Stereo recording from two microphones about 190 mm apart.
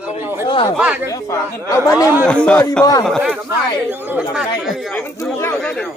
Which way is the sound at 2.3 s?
5° left (ahead or behind).